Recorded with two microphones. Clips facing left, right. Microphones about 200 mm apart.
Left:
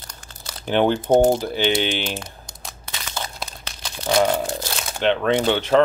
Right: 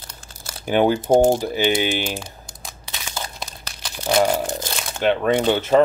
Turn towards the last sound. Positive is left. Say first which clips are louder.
# right 1 dB
turn(degrees=-5)  # may be behind; listen again after turning